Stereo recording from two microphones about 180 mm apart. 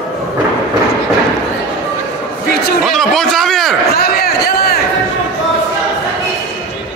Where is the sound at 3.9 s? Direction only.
60° left (ahead or behind).